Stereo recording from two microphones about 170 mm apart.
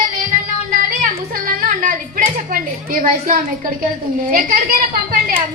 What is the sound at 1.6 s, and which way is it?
A woman's voice, 55° right (ahead or behind).